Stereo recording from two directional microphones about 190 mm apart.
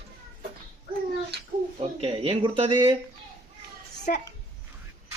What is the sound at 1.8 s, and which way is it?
Speech, 30° right (ahead or behind).